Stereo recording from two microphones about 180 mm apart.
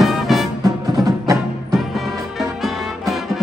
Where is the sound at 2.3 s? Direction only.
Centre (ahead or behind).